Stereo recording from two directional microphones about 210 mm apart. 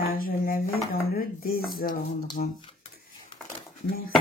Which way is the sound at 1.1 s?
45° left (ahead or behind).